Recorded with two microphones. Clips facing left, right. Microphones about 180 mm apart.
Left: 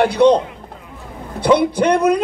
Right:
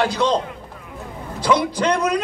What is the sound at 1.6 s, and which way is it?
Speech, 60° left (ahead or behind).